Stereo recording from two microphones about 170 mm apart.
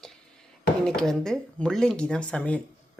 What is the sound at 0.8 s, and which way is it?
Speech, 5° left (ahead or behind).